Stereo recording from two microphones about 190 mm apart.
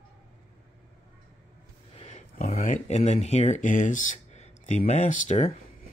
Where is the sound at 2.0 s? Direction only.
35° left (ahead or behind).